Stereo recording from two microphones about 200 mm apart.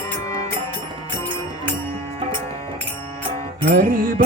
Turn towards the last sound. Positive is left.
turn(degrees=-45)  # may be behind; listen again after turning